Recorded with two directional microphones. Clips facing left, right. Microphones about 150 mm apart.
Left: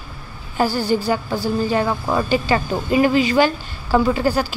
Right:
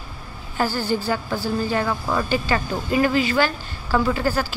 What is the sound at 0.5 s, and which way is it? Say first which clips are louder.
A woman's voice: left 4 dB; 15° left (ahead or behind).